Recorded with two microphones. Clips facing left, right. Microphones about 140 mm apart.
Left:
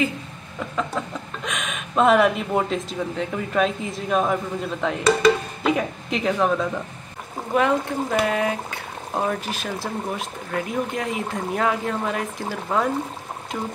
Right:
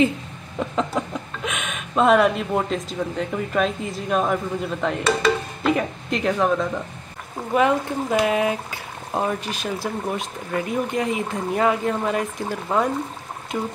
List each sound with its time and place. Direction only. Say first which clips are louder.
0.6 s chicken: right 3 dB; 20° right (ahead or behind)
1.4 s speech: left 1 dB; centre (ahead or behind)